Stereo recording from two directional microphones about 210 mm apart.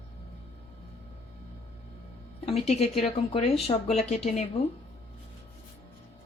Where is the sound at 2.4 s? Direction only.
30° left (ahead or behind).